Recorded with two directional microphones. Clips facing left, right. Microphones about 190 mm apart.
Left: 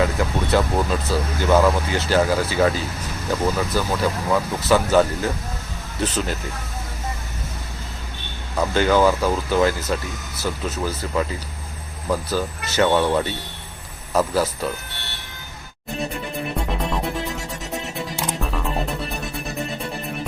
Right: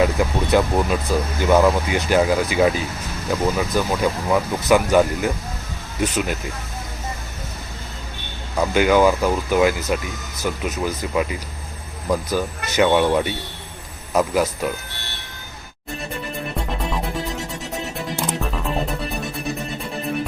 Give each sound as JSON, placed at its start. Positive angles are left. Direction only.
{"t": 0.0, "sound": "vehicle", "side_deg": -15}
{"t": 1.5, "sound": "speech", "side_deg": -10}
{"t": 8.5, "sound": "speech", "side_deg": -10}
{"t": 16.8, "sound": "music", "side_deg": 0}